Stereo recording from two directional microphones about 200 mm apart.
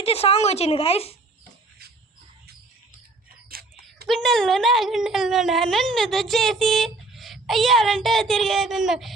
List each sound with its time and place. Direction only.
0.0 s a woman's voice: 30° left (ahead or behind)
3.5 s a sound: 50° right (ahead or behind)
4.0 s speech: centre (ahead or behind)